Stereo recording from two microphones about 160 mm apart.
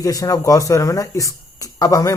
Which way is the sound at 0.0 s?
20° left (ahead or behind).